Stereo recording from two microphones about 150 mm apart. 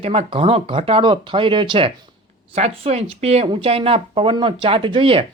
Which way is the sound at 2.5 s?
45° right (ahead or behind).